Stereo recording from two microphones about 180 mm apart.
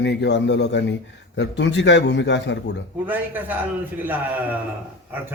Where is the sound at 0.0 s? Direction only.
80° left.